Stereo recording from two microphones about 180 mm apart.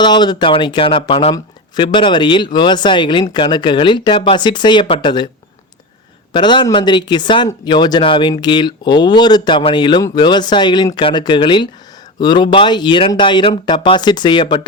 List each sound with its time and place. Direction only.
0.0 s speech: 25° left (ahead or behind)
6.3 s speech: 25° left (ahead or behind)